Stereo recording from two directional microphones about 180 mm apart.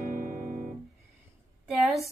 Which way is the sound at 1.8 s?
Centre (ahead or behind).